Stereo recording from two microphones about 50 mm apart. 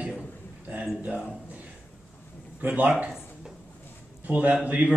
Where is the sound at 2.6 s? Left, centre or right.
Right.